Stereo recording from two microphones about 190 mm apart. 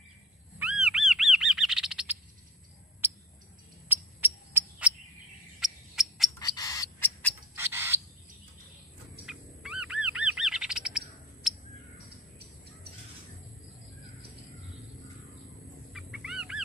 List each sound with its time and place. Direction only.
0.6 s bird: 5° right (ahead or behind)
3.9 s cricket: 10° right (ahead or behind)
6.3 s frog: 20° left (ahead or behind)
7.5 s bird: 10° right (ahead or behind)
9.2 s bird: 5° right (ahead or behind)
15.9 s fowl: 5° right (ahead or behind)